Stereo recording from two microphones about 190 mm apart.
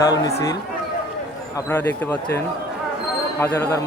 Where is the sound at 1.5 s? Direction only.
10° left (ahead or behind).